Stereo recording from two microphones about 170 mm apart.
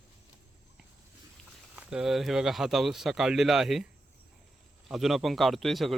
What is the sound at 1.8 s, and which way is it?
Speech, 5° right (ahead or behind).